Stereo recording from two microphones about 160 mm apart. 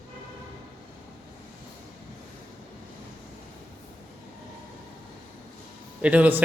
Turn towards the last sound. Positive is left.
turn(degrees=-10)  # may be behind; listen again after turning